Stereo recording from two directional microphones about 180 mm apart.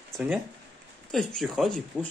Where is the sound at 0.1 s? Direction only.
5° right (ahead or behind).